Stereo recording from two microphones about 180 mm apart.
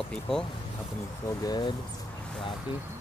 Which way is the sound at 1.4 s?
25° left (ahead or behind).